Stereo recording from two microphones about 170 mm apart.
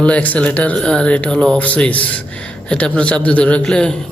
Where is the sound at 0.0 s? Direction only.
10° left (ahead or behind).